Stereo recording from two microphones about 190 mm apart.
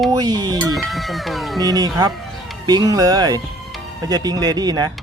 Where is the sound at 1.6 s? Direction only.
20° right (ahead or behind).